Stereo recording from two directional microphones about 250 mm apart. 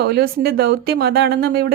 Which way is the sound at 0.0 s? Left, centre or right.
Right.